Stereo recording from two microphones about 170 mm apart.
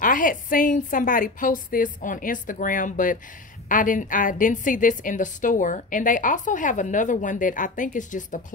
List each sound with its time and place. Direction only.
0.0 s a woman's voice: 55° left (ahead or behind)